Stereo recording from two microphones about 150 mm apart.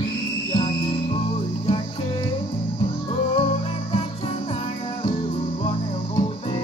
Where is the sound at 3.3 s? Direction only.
40° left (ahead or behind).